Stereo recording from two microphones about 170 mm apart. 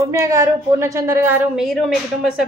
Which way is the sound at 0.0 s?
20° right (ahead or behind).